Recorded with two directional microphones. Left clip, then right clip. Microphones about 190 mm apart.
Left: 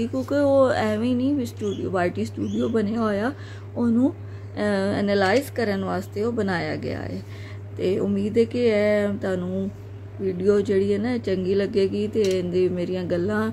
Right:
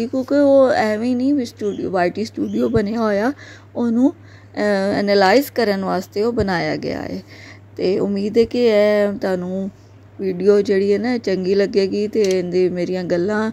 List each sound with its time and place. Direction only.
0.1 s a woman's voice: 30° right (ahead or behind)